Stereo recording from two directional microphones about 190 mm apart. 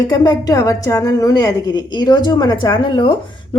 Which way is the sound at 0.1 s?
20° left (ahead or behind).